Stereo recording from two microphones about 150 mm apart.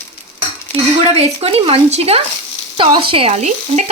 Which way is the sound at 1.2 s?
40° right (ahead or behind).